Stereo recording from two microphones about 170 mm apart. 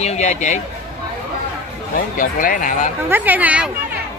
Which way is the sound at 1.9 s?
50° left (ahead or behind).